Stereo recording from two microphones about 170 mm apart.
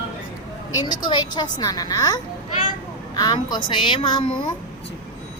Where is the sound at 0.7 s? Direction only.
25° left (ahead or behind).